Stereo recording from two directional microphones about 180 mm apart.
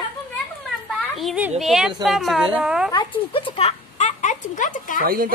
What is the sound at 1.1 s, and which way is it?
A woman's voice, 5° right (ahead or behind).